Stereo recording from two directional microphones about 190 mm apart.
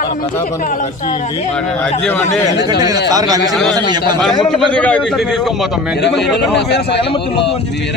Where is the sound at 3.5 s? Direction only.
Centre (ahead or behind).